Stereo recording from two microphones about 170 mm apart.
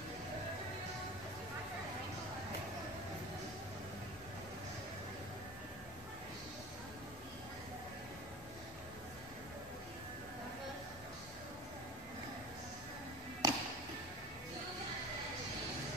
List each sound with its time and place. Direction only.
13.4 s music: 25° right (ahead or behind)